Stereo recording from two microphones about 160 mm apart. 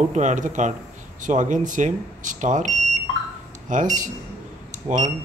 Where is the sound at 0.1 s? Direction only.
50° right (ahead or behind).